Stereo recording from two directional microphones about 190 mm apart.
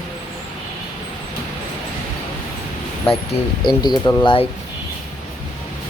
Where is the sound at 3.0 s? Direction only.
25° left (ahead or behind).